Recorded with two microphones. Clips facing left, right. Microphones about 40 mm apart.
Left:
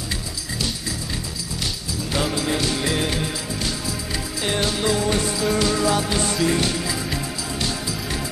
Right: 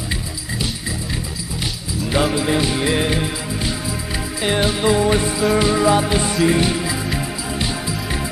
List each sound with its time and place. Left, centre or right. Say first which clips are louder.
2.0 s music: right 5 dB; centre